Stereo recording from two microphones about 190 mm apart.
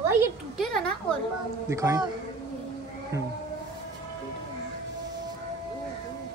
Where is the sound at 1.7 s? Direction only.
15° right (ahead or behind).